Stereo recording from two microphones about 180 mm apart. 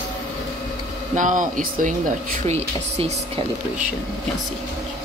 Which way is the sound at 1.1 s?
45° right (ahead or behind).